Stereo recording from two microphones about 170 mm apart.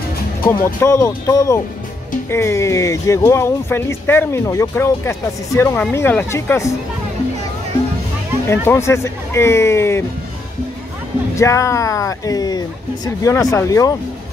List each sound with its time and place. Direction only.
0.7 s speech: 15° left (ahead or behind)
8.5 s speech: 15° left (ahead or behind)
11.3 s speech: 20° left (ahead or behind)